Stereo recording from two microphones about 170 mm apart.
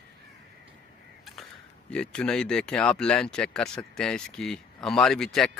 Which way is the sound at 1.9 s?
5° left (ahead or behind).